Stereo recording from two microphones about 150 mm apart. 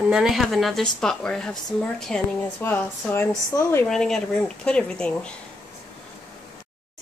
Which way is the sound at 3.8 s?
5° left (ahead or behind).